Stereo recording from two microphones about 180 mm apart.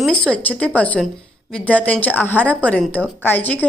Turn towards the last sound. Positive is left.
turn(degrees=10)  # may be behind; listen again after turning